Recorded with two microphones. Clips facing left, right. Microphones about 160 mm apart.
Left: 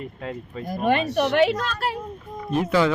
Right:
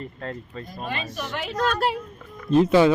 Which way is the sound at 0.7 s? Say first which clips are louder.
Left 11 dB; 55° left (ahead or behind).